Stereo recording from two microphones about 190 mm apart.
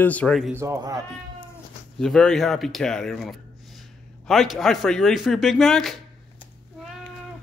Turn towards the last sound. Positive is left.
turn(degrees=0)  # may be behind; listen again after turning